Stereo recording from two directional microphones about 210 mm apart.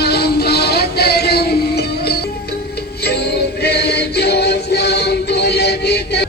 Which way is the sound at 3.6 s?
50° left (ahead or behind).